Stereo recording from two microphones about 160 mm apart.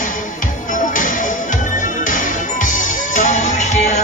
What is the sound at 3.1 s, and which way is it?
Music, 50° left (ahead or behind).